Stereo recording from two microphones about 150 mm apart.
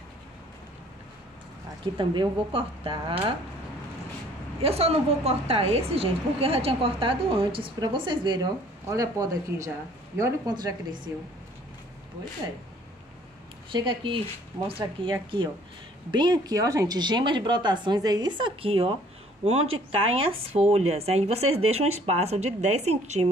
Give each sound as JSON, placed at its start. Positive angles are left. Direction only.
{"t": 2.0, "sound": "a woman's voice", "side_deg": -35}
{"t": 4.6, "sound": "a woman's voice", "side_deg": -40}
{"t": 13.7, "sound": "a woman's voice", "side_deg": -35}